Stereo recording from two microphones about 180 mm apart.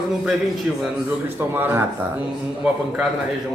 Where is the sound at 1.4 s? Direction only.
10° right (ahead or behind).